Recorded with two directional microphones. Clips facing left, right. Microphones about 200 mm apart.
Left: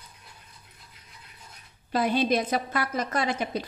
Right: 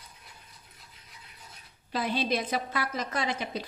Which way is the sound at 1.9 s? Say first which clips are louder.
Left 5 dB; 50° left (ahead or behind).